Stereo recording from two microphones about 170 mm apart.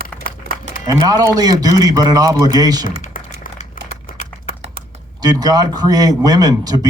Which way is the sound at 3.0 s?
50° left (ahead or behind).